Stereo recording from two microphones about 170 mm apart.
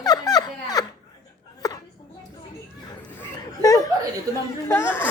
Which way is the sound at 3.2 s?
20° left (ahead or behind).